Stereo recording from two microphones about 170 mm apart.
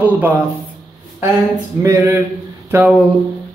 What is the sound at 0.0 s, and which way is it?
Speech, 10° right (ahead or behind).